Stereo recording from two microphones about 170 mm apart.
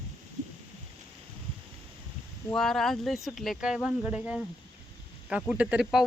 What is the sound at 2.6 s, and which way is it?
Speech, centre (ahead or behind).